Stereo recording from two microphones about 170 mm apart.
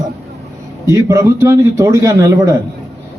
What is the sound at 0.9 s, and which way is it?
A man's voice, 15° right (ahead or behind).